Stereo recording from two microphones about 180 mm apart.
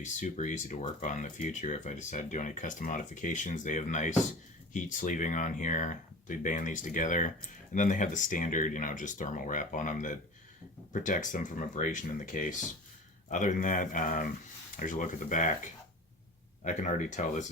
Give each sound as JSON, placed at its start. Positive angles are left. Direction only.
{"t": 0.0, "sound": "speech", "side_deg": 40}
{"t": 16.6, "sound": "speech", "side_deg": 45}